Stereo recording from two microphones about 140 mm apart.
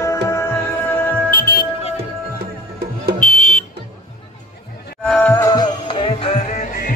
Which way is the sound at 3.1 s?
65° left (ahead or behind).